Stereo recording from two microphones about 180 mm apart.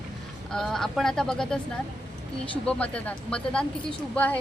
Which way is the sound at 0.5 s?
Centre (ahead or behind).